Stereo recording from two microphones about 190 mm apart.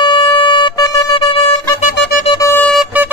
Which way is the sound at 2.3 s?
25° left (ahead or behind).